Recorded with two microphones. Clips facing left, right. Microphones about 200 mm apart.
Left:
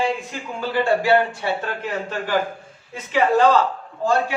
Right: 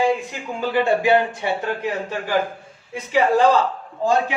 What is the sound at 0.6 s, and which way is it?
A man's voice, 15° right (ahead or behind).